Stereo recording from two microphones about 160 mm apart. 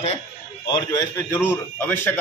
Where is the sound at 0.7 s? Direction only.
25° left (ahead or behind).